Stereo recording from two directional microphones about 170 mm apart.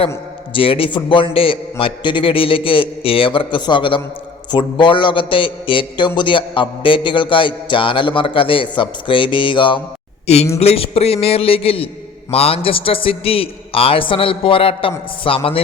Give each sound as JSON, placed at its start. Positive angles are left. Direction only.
{"t": 0.5, "sound": "a man's voice", "side_deg": 30}
{"t": 4.5, "sound": "a sound", "side_deg": 30}
{"t": 10.2, "sound": "a man's voice", "side_deg": 40}